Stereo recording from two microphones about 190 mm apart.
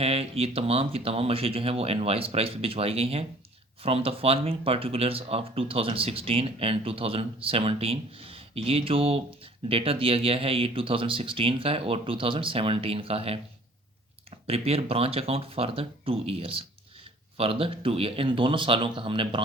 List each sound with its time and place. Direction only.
0.0 s speech: 30° right (ahead or behind)